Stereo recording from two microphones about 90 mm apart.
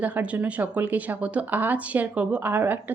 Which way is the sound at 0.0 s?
15° right (ahead or behind).